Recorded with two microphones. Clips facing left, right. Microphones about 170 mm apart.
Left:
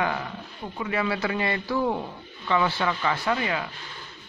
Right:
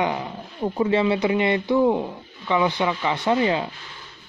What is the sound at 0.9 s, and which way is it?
Speech, 25° right (ahead or behind).